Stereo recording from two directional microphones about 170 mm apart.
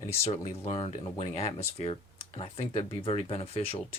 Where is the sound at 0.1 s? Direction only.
35° left (ahead or behind).